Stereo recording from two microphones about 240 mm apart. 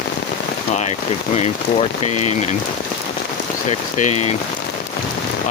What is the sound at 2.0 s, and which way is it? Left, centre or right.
Speech, left.